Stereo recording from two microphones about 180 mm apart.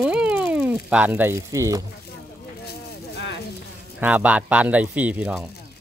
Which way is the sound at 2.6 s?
65° left (ahead or behind).